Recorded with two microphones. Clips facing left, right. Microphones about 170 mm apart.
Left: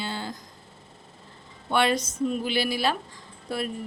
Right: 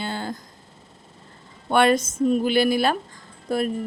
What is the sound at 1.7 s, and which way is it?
A woman's voice, 50° right (ahead or behind).